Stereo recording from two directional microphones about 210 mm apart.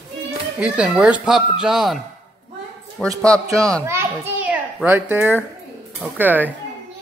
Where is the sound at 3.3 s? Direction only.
15° right (ahead or behind).